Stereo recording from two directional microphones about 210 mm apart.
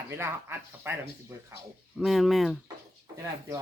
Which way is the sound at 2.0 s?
Centre (ahead or behind).